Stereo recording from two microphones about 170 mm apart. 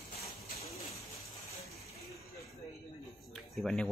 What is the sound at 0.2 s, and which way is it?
Bird, 35° left (ahead or behind).